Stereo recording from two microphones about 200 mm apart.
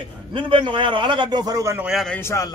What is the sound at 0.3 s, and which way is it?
A man's voice, 25° right (ahead or behind).